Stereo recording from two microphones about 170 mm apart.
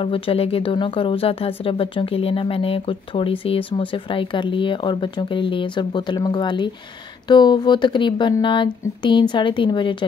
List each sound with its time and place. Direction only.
0.0 s speech: 30° left (ahead or behind)